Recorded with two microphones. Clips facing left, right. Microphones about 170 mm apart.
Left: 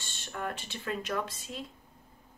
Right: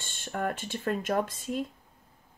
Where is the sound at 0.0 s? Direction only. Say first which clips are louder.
Right 5 dB; 50° right (ahead or behind).